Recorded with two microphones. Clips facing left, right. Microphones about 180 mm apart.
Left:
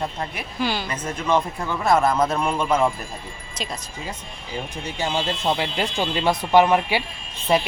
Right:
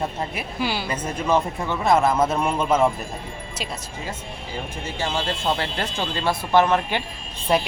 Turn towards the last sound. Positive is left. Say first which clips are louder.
# left 1 dB
turn(degrees=0)  # may be behind; listen again after turning